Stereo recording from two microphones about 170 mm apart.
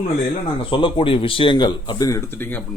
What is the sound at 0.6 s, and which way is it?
Speech, 30° left (ahead or behind).